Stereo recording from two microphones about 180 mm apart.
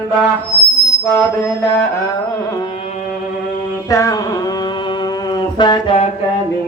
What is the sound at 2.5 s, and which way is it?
Carnatic music, 25° left (ahead or behind).